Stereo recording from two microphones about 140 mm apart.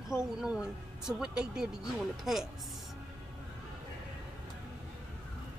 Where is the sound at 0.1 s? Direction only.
5° right (ahead or behind).